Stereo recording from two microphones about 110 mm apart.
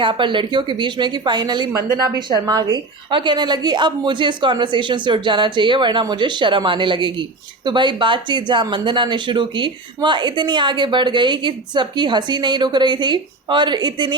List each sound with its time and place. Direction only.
0.0 s a woman's voice: 50° right (ahead or behind)